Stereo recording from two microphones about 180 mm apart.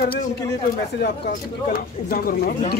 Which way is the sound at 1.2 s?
55° left (ahead or behind).